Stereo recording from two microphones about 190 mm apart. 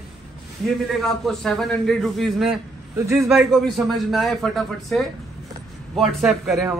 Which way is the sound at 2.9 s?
15° right (ahead or behind).